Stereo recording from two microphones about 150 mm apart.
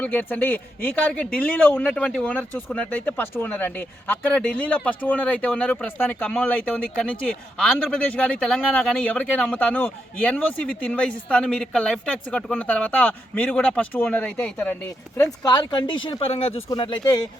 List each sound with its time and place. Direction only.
0.0 s speech: 10° left (ahead or behind)
15.2 s speech: 25° left (ahead or behind)
16.6 s speech: 30° left (ahead or behind)